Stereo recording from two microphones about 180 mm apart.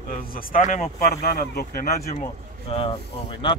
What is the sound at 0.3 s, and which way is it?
Speech, 50° left (ahead or behind).